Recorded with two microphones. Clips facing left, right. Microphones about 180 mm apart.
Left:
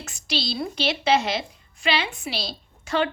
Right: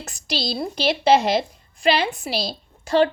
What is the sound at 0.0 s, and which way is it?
A woman's voice, 40° right (ahead or behind).